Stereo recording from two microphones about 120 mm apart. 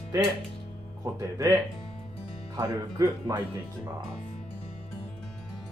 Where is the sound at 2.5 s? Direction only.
25° right (ahead or behind).